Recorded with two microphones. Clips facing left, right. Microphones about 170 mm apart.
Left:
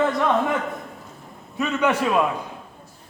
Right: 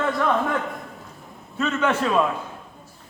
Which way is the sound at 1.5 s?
15° left (ahead or behind).